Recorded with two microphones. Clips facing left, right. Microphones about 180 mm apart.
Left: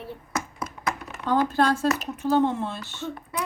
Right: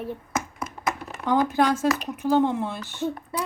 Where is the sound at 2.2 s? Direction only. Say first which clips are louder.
Right 1 dB; 15° right (ahead or behind).